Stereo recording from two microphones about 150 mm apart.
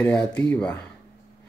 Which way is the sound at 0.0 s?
5° left (ahead or behind).